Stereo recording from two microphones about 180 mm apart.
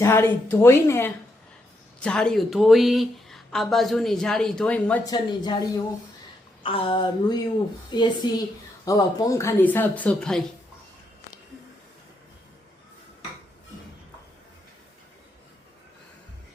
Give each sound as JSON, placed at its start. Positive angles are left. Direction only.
{"t": 0.0, "sound": "speech", "side_deg": 15}
{"t": 5.0, "sound": "speech", "side_deg": 25}